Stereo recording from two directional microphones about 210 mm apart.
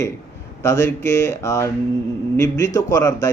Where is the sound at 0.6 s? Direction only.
15° left (ahead or behind).